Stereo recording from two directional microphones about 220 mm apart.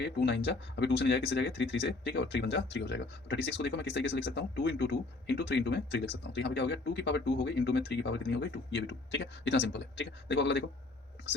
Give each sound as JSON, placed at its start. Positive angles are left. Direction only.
{"t": 0.0, "sound": "speech", "side_deg": 50}